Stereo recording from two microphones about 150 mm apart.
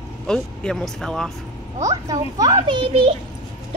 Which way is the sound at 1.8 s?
25° right (ahead or behind).